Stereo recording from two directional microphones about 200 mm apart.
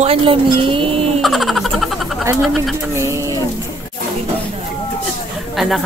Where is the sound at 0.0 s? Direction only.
30° right (ahead or behind).